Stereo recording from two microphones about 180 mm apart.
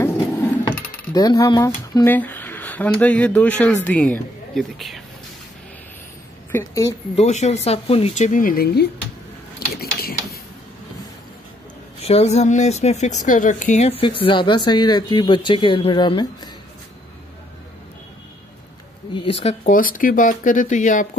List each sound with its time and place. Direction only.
1.1 s speech: 20° left (ahead or behind); by 5.0 s centre (ahead or behind)
6.5 s a woman's voice: 15° left (ahead or behind)
7.2 s a woman's voice: 40° left (ahead or behind); by 8.8 s 60° left (ahead or behind)
9.8 s a sound: 60° left (ahead or behind)
12.0 s a woman's voice: 35° left (ahead or behind)
19.1 s speech: 30° left (ahead or behind)
19.6 s speech: 50° left (ahead or behind)